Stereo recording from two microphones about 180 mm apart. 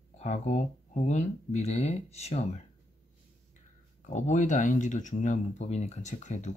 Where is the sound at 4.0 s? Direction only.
40° left (ahead or behind).